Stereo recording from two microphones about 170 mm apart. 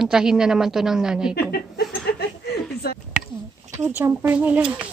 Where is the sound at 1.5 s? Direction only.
70° left (ahead or behind).